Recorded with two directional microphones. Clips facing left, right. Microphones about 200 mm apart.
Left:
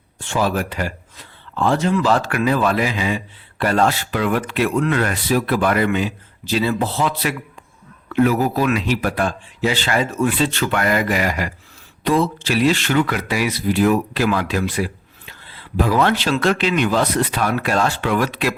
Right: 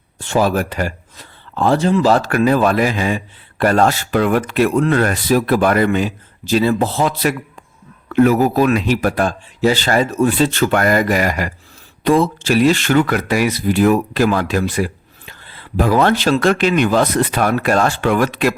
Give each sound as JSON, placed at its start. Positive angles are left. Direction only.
{"t": 0.2, "sound": "speech", "side_deg": -40}